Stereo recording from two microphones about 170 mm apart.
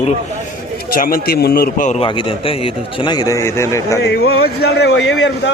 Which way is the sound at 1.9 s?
30° left (ahead or behind).